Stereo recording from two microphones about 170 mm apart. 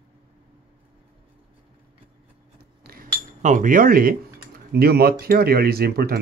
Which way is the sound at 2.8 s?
65° right (ahead or behind).